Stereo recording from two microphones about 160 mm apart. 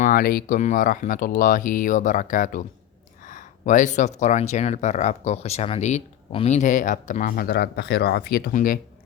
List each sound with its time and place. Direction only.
0.0 s speech: 65° left (ahead or behind); by 8.4 s 80° left
8.5 s speech: 60° left (ahead or behind)